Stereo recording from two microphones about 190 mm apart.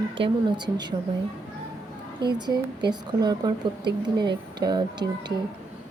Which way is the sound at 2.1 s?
25° right (ahead or behind).